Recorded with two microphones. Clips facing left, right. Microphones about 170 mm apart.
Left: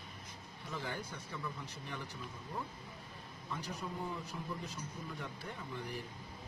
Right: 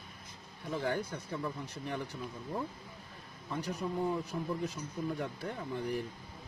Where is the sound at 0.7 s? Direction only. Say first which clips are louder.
Right 8 dB; 55° right (ahead or behind).